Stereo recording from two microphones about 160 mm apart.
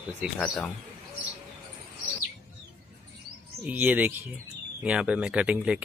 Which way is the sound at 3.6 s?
10° right (ahead or behind).